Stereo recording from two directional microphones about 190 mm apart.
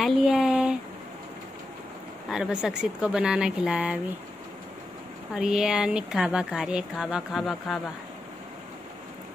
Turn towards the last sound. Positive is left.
turn(degrees=0)  # may be behind; listen again after turning